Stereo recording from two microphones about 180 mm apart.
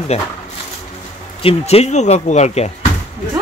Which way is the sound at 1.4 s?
35° left (ahead or behind).